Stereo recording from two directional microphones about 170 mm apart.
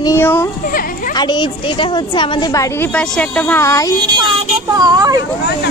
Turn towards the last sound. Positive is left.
turn(degrees=-25)  # may be behind; listen again after turning